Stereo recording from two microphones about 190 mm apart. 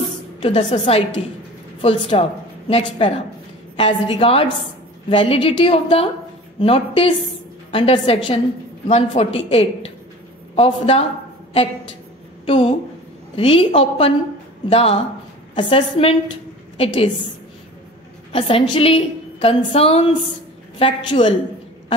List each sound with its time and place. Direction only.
0.4 s a woman's voice: 30° left (ahead or behind)
12.4 s a woman's voice: 30° left (ahead or behind)
18.3 s a woman's voice: 25° left (ahead or behind)